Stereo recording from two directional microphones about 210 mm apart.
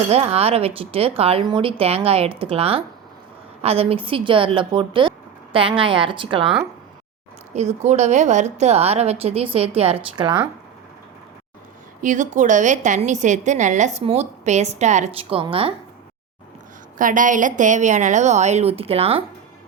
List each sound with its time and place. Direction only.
0.1 s a woman's voice: 30° right (ahead or behind)
7.5 s a woman's voice: 35° right (ahead or behind)
12.0 s a woman's voice: 35° right (ahead or behind)
17.0 s a woman's voice: 40° right (ahead or behind)